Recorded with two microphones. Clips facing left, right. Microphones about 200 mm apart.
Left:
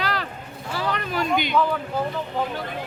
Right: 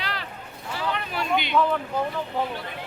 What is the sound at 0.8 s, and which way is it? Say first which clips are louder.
Speech: left 3 dB; 40° left (ahead or behind).